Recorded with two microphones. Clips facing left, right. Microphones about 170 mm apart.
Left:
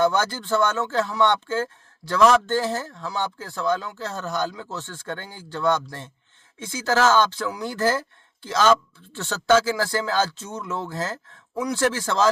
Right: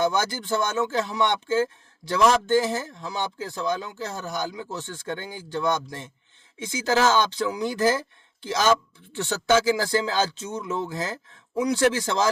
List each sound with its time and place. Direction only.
0.0 s speech: 15° right (ahead or behind)